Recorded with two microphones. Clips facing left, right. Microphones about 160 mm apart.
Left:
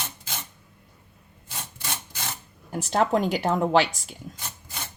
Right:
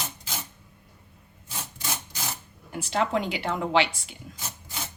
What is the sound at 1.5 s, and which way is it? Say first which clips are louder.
Wood: right 1 dB; centre (ahead or behind).